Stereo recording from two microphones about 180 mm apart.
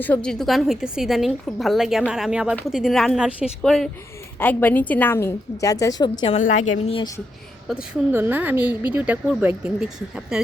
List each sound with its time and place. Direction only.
0.0 s a woman's voice: 5° left (ahead or behind); by 6.3 s 25° left (ahead or behind)
6.3 s a woman's voice: 40° left (ahead or behind)
7.7 s a woman's voice: 10° right (ahead or behind)